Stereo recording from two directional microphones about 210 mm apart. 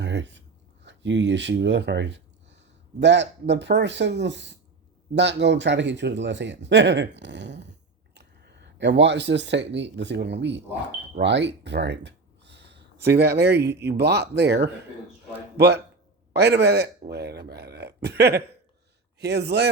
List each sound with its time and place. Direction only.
0.0 s whispering: 55° right (ahead or behind)
0.9 s a man's voice: 60° right (ahead or behind)